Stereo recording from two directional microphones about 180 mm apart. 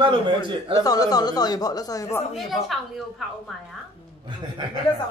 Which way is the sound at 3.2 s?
Centre (ahead or behind).